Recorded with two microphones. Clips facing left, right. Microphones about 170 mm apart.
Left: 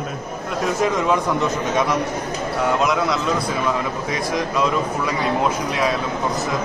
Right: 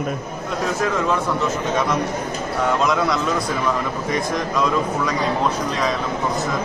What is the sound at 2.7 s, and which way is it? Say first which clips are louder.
Speech: even; centre (ahead or behind).